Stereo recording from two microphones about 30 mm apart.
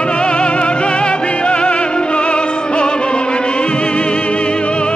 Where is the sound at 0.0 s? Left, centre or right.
Left.